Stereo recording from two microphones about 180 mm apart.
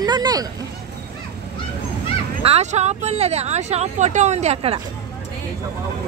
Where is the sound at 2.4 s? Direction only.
35° right (ahead or behind).